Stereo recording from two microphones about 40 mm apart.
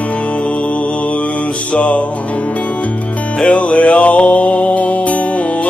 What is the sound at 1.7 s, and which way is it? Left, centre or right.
Music, left.